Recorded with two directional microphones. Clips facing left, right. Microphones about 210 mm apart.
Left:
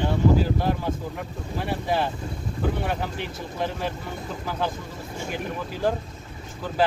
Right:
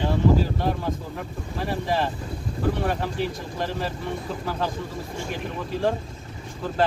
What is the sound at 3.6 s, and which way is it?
Speech, centre (ahead or behind).